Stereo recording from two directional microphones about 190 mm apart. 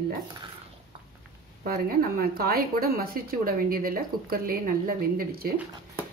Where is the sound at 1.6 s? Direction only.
50° right (ahead or behind).